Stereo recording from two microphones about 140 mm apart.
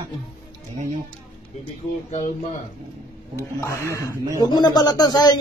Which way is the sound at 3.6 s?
20° left (ahead or behind).